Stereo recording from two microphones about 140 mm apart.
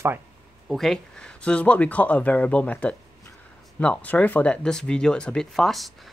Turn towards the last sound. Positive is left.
turn(degrees=0)  # may be behind; listen again after turning